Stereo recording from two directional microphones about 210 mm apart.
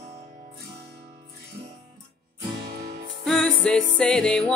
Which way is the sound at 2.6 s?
50° right (ahead or behind).